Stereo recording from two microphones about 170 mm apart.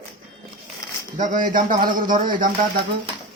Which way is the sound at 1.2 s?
50° right (ahead or behind).